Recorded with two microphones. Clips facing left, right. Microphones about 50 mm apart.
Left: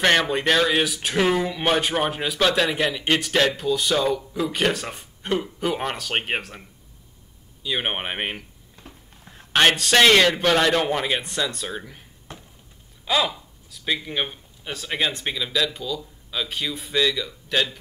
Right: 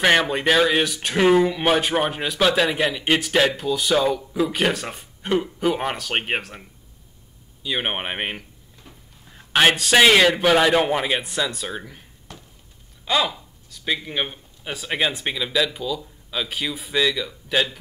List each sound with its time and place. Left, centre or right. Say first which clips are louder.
0.0 s speech: right 1 dB; centre
7.6 s a man's voice: right 1 dB; centre
12.3 s a sound: left 1 dB; left
13.0 s speech: right 1 dB; centre